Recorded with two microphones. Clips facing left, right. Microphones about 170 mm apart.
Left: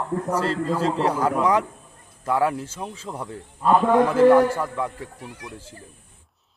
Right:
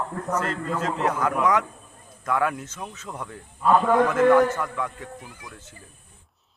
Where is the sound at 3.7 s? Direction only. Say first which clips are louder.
Left 2 dB; 10° left (ahead or behind).